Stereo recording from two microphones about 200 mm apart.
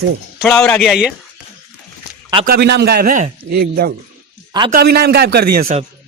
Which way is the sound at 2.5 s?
55° right (ahead or behind).